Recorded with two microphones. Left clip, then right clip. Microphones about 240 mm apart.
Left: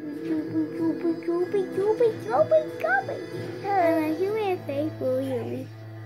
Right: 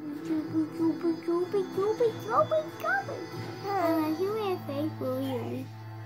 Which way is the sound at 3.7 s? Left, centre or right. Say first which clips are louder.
Left 5 dB; centre.